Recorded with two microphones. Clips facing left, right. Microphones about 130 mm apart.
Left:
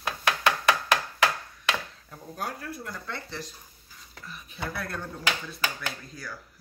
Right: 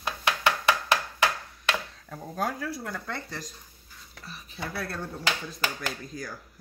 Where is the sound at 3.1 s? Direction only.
40° right (ahead or behind).